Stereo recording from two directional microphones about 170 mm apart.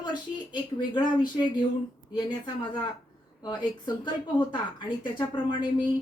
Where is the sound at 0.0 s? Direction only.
25° left (ahead or behind).